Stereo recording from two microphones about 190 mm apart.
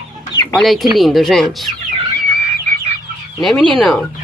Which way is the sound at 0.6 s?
Centre (ahead or behind).